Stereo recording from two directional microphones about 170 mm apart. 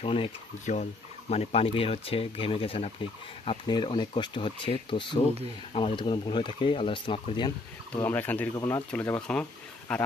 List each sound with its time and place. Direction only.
0.0 s speech: 35° left (ahead or behind)
7.9 s speech: 10° left (ahead or behind)